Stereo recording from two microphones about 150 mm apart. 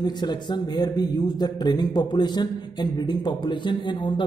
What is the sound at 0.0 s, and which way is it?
Speech, 30° left (ahead or behind).